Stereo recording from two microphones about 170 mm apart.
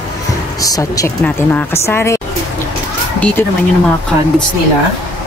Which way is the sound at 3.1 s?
10° left (ahead or behind).